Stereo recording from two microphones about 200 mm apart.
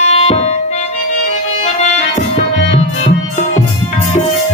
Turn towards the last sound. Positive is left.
turn(degrees=35)  # may be behind; listen again after turning